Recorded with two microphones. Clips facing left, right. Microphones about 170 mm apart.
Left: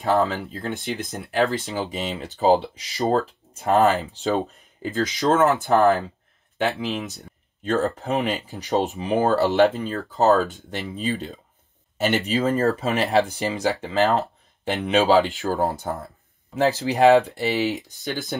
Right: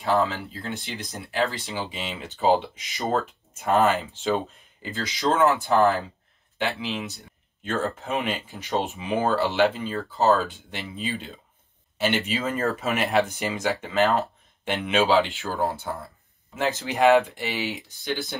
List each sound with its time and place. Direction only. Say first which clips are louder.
0.0 s speech: left 2 dB; 45° left (ahead or behind)
5.0 s speech: left 2 dB; 50° left (ahead or behind)
6.8 s speech: left 3 dB; 45° left (ahead or behind)